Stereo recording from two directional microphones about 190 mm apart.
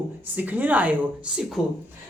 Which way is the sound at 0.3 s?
10° right (ahead or behind).